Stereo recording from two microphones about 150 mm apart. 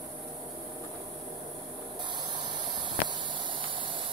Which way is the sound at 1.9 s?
30° right (ahead or behind).